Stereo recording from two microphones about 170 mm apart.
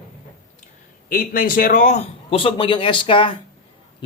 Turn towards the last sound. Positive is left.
turn(degrees=30)  # may be behind; listen again after turning